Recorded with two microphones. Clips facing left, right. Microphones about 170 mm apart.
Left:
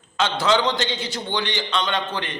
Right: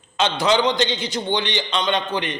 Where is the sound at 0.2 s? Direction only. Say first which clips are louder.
Right 2 dB; 20° right (ahead or behind).